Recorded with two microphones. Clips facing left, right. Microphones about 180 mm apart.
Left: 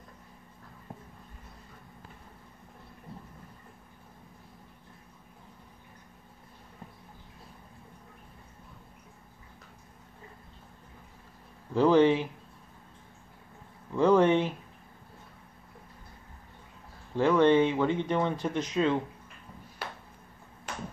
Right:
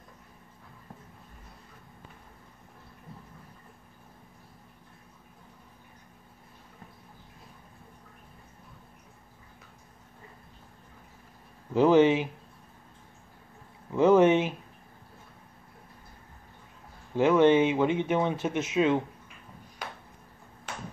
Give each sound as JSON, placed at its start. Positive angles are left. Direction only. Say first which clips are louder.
{"t": 11.7, "sound": "speech", "louder": "right 1 dB", "side_deg": -20}
{"t": 13.9, "sound": "speech", "louder": "right 2 dB", "side_deg": -20}
{"t": 17.2, "sound": "speech", "louder": "right 1 dB", "side_deg": -20}